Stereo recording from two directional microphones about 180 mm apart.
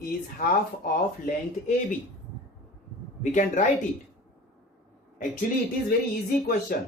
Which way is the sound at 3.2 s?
45° left (ahead or behind).